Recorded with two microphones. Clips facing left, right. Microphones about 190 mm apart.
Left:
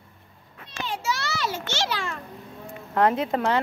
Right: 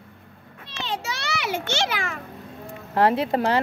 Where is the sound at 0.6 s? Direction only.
75° right (ahead or behind).